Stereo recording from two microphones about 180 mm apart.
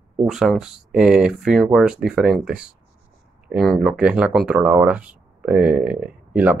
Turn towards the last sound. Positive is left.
turn(degrees=-5)  # may be behind; listen again after turning